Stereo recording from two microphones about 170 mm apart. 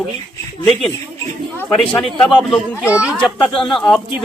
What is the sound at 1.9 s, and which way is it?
Speech, centre (ahead or behind).